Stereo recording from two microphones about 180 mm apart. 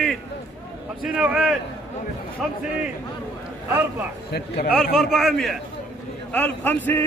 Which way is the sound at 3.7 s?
10° right (ahead or behind).